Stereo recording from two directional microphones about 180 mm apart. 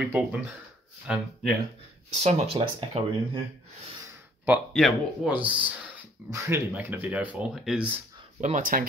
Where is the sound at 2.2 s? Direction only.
35° right (ahead or behind).